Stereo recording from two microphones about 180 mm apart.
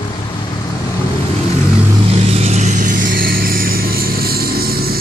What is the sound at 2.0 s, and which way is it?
Vehicle, 35° right (ahead or behind).